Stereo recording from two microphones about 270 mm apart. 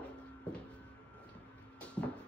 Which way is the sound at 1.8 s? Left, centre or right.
Centre.